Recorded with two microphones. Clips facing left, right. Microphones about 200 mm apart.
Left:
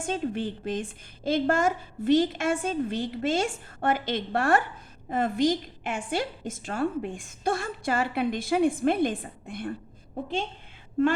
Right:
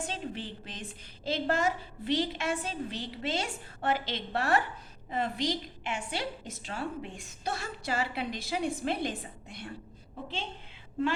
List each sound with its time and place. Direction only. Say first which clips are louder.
0.0 s a woman's voice: left 8 dB; 50° left (ahead or behind)